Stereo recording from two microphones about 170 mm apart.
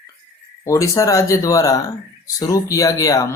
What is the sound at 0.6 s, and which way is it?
Speech, 20° left (ahead or behind).